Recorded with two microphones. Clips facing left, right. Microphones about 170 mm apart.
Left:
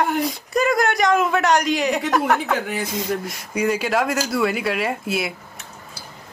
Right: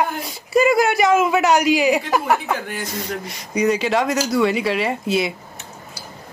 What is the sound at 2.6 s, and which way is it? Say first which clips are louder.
Speech: left 3 dB; 75° left (ahead or behind).